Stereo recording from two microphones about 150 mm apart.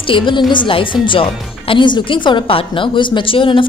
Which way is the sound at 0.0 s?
35° left (ahead or behind).